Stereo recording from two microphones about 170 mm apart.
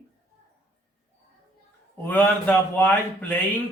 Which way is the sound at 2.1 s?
10° left (ahead or behind).